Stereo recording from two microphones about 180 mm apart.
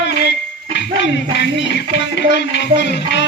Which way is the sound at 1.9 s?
75° left (ahead or behind).